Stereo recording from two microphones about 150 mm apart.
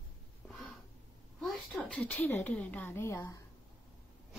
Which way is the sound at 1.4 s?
10° left (ahead or behind).